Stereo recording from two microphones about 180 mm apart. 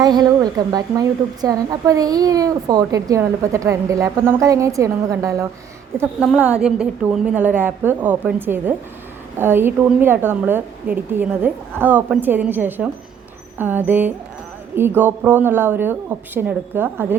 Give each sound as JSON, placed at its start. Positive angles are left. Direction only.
{"t": 0.0, "sound": "a woman's voice", "side_deg": -25}
{"t": 6.0, "sound": "a child's voice", "side_deg": -5}